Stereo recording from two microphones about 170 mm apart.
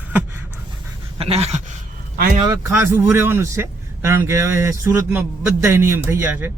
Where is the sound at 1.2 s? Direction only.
40° right (ahead or behind).